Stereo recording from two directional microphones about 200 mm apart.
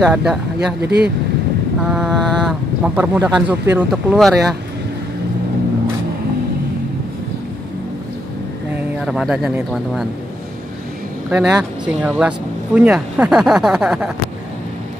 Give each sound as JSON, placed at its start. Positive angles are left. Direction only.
{"t": 0.0, "sound": "speech", "side_deg": -5}
{"t": 0.8, "sound": "speech", "side_deg": -55}
{"t": 1.8, "sound": "speech", "side_deg": -5}
{"t": 8.7, "sound": "speech", "side_deg": 0}
{"t": 11.2, "sound": "speech", "side_deg": -5}